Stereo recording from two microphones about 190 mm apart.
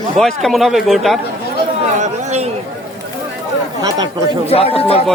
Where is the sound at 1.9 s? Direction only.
35° right (ahead or behind).